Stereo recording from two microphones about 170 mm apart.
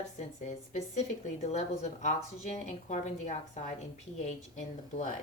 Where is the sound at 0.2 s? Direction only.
45° left (ahead or behind).